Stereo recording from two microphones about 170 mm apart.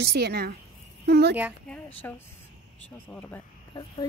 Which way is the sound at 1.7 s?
10° left (ahead or behind).